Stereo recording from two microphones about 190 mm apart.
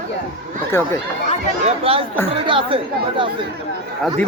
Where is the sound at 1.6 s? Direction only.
30° right (ahead or behind).